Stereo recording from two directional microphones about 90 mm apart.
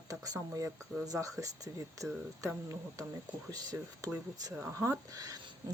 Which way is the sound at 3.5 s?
40° right (ahead or behind).